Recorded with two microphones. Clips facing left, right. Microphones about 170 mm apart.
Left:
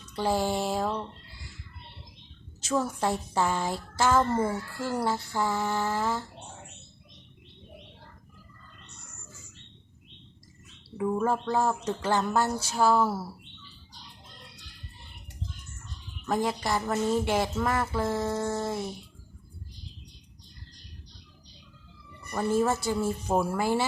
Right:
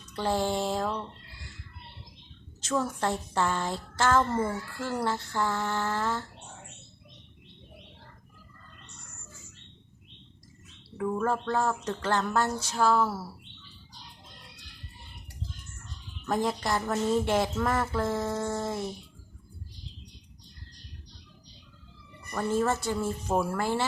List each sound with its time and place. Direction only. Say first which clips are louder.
0.2 s a woman's voice: left 1 dB; 10° left (ahead or behind)
2.6 s a woman's voice: left 1 dB; 5° left (ahead or behind)
10.9 s a woman's voice: left 2 dB; 15° left (ahead or behind)
16.2 s speech: even; centre (ahead or behind)
22.3 s a woman's voice: left 2 dB; 10° left (ahead or behind)